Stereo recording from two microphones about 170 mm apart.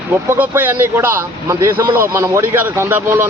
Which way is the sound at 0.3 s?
10° right (ahead or behind).